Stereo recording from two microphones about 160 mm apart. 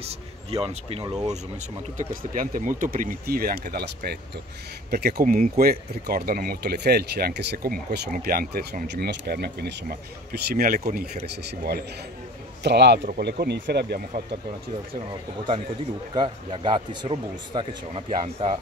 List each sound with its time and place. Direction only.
0.0 s speech: 40° right (ahead or behind); by 8.1 s 80° right
8.2 s speech: 70° right (ahead or behind)
11.4 s speech: 75° right (ahead or behind)
12.6 s speech: 90° right
15.0 s speech: 30° right (ahead or behind)